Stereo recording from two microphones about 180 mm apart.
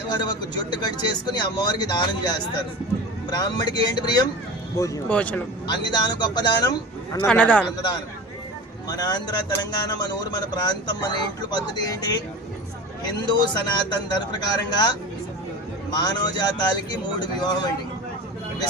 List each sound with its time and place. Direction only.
0.1 s speech: 25° left (ahead or behind)
4.8 s speech: 10° left (ahead or behind)
5.6 s speech: 25° left (ahead or behind)
7.3 s speech: 5° left (ahead or behind)
8.9 s speech: 20° left (ahead or behind)